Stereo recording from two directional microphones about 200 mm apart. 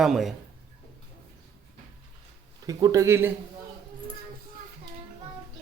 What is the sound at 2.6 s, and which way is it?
Speech, 15° right (ahead or behind).